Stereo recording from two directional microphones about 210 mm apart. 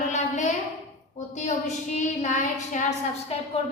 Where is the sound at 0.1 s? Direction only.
35° left (ahead or behind).